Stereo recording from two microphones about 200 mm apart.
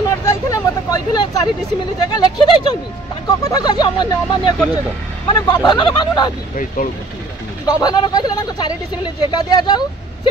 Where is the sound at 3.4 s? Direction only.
20° left (ahead or behind).